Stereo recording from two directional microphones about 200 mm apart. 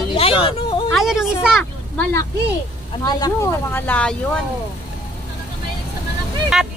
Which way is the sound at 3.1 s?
20° left (ahead or behind).